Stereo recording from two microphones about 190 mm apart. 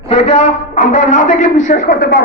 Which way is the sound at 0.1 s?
35° left (ahead or behind).